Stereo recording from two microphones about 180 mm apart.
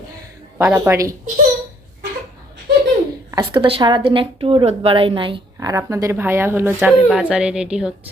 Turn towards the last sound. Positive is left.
turn(degrees=-5)  # may be behind; listen again after turning